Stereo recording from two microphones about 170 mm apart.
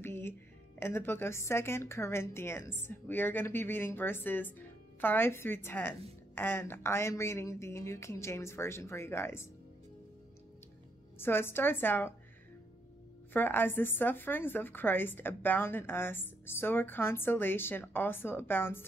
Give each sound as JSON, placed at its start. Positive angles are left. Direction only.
{"t": 0.0, "sound": "music", "side_deg": 15}
{"t": 0.7, "sound": "speech", "side_deg": 15}
{"t": 11.1, "sound": "speech", "side_deg": 15}
{"t": 13.3, "sound": "speech", "side_deg": 10}